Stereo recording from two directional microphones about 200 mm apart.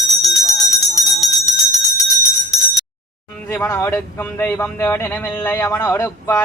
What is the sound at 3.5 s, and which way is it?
Speech, 10° left (ahead or behind).